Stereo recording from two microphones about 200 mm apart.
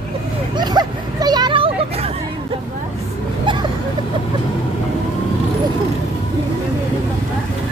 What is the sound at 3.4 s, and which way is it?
Vehicle, 25° right (ahead or behind).